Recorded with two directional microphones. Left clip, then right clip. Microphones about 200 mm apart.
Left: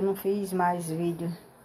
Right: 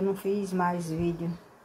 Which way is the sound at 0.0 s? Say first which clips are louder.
Left 1 dB; 5° left (ahead or behind).